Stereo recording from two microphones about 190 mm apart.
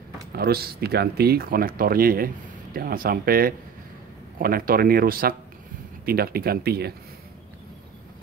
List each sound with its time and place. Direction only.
0.3 s speech: 55° right (ahead or behind)